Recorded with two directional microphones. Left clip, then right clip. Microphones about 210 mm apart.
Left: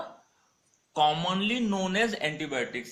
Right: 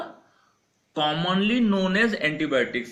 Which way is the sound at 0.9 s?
40° left (ahead or behind).